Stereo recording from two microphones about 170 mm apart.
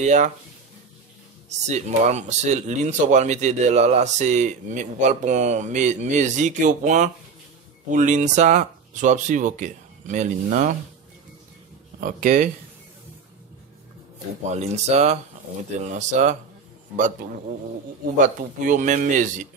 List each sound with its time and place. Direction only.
0.0 s speech: 45° right (ahead or behind)
1.7 s speech: 40° right (ahead or behind)
12.0 s speech: 50° right (ahead or behind)
14.4 s speech: 40° right (ahead or behind)
18.1 s speech: 50° right (ahead or behind)